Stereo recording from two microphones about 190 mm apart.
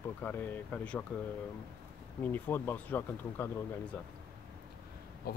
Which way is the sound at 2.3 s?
10° left (ahead or behind).